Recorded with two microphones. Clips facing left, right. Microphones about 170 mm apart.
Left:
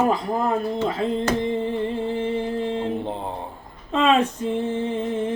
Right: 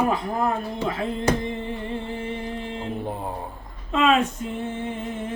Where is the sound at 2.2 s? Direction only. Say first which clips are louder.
Left 6 dB; 35° left (ahead or behind).